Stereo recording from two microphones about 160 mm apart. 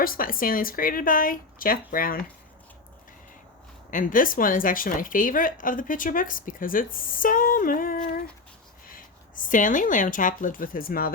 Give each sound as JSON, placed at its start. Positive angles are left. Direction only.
{"t": 0.0, "sound": "a woman's voice", "side_deg": 65}
{"t": 3.9, "sound": "a woman's voice", "side_deg": 55}